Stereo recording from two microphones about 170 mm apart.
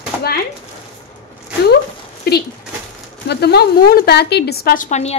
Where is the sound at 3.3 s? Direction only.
70° left (ahead or behind); by 5.1 s 45° left (ahead or behind).